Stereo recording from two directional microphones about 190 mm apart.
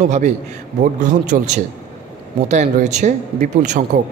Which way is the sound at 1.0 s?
40° right (ahead or behind).